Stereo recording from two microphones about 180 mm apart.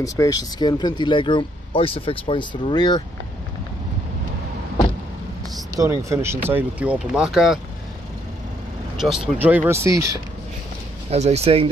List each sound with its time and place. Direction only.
0.0 s speech: 20° left (ahead or behind)
5.8 s speech: 15° right (ahead or behind)
9.0 s speech: 5° right (ahead or behind)
11.1 s speech: 35° right (ahead or behind)